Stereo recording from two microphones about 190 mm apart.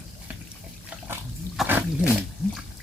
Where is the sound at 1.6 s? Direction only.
Centre (ahead or behind).